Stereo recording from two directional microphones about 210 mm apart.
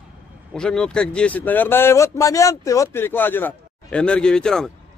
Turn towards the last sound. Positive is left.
turn(degrees=5)  # may be behind; listen again after turning